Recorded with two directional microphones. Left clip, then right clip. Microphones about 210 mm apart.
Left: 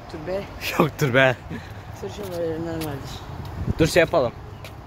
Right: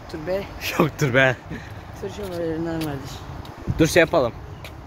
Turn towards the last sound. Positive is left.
turn(degrees=-10)  # may be behind; listen again after turning